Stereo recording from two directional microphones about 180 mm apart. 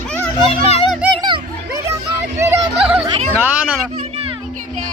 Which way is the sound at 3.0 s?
35° right (ahead or behind).